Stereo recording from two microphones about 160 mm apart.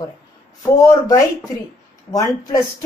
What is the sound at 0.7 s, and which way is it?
A woman's voice, 20° left (ahead or behind).